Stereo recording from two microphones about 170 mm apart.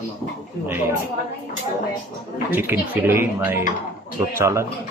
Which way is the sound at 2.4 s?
10° right (ahead or behind).